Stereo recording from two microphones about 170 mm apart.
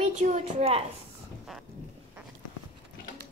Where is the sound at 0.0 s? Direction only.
45° right (ahead or behind).